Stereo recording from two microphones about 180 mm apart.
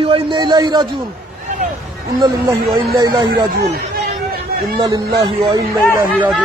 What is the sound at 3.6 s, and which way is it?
Chatter, 60° right (ahead or behind).